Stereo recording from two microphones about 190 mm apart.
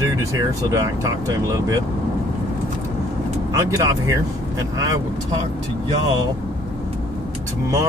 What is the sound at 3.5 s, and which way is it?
Speech, 15° right (ahead or behind).